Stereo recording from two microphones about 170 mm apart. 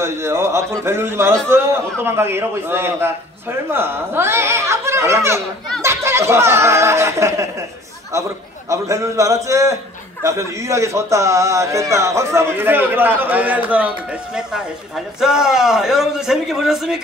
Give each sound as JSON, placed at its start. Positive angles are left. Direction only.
{"t": 0.0, "sound": "a man's voice", "side_deg": -15}